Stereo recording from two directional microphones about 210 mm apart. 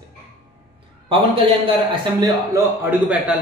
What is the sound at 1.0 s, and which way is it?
A man's voice, 25° right (ahead or behind).